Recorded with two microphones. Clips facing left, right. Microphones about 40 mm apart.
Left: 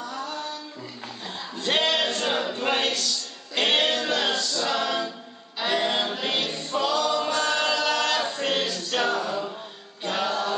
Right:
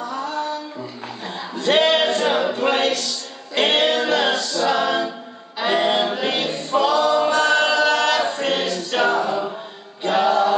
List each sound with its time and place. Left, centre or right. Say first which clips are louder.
0.0 s a sound: right 7 dB; right
3.5 s music: right 5 dB; centre
5.6 s choir: right 6 dB; right
10.0 s chant: right 9 dB; centre